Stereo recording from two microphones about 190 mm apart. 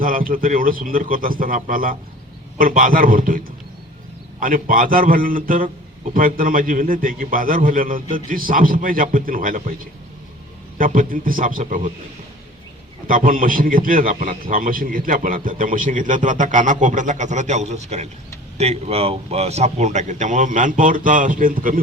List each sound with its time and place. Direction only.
0.0 s a man's voice: 45° right (ahead or behind)
10.8 s a man's voice: 45° right (ahead or behind)
13.1 s a man's voice: 45° right (ahead or behind)